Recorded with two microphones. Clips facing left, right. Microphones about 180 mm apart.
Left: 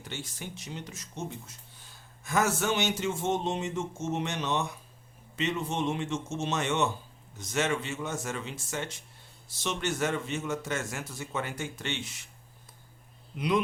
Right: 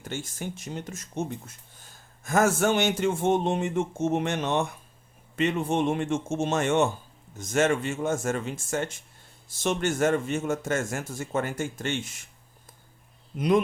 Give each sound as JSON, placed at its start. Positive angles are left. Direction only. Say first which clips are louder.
{"t": 0.0, "sound": "speech", "louder": "right 6 dB", "side_deg": -45}
{"t": 13.3, "sound": "speech", "louder": "right 5 dB", "side_deg": -45}